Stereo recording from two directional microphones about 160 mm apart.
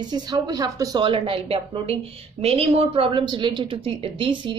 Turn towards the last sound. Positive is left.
turn(degrees=-35)  # may be behind; listen again after turning